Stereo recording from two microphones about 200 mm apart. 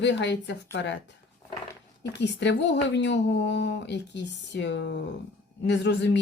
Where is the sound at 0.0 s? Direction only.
60° left (ahead or behind).